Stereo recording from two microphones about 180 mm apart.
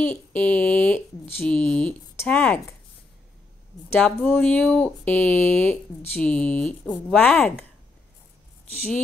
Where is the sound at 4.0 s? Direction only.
5° left (ahead or behind).